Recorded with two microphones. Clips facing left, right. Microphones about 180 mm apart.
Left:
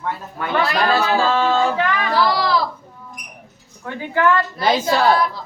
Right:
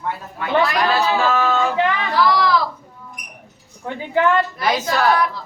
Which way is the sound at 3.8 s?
20° right (ahead or behind).